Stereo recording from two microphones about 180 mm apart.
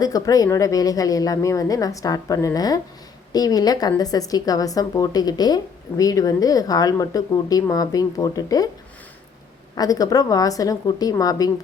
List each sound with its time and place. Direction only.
0.0 s speech: 20° left (ahead or behind)
9.7 s speech: 20° left (ahead or behind)